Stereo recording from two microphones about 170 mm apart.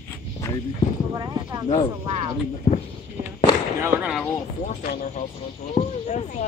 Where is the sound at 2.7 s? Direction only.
45° left (ahead or behind).